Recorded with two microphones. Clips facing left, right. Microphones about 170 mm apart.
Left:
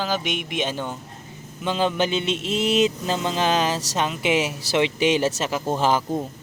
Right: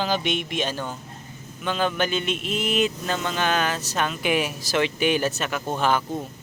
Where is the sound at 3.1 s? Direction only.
25° left (ahead or behind).